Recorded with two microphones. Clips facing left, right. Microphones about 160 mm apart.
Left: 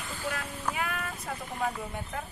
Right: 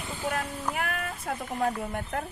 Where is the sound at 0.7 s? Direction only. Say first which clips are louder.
Even; 55° right (ahead or behind).